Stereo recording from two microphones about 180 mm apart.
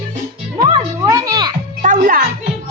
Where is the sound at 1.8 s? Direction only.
45° right (ahead or behind).